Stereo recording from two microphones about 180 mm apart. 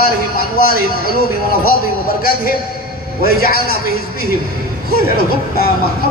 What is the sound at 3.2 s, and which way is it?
Speech, 55° left (ahead or behind).